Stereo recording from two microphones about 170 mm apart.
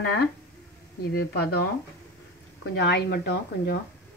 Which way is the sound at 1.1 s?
75° left (ahead or behind).